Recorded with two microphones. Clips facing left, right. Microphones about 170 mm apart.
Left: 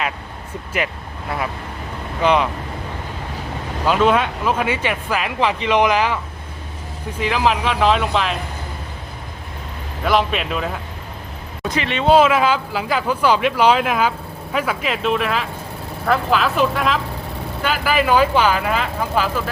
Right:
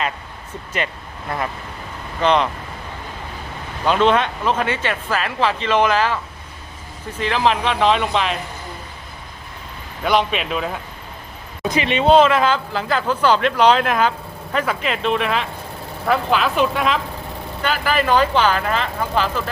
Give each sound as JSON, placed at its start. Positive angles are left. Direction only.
{"t": 2.2, "sound": "speech", "side_deg": 10}
{"t": 3.8, "sound": "speech", "side_deg": 5}
{"t": 7.2, "sound": "speech", "side_deg": 5}
{"t": 10.0, "sound": "speech", "side_deg": 0}
{"t": 11.6, "sound": "speech", "side_deg": -15}
{"t": 12.0, "sound": "speech", "side_deg": 5}